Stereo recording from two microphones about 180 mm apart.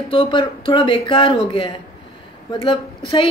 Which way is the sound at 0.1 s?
30° left (ahead or behind).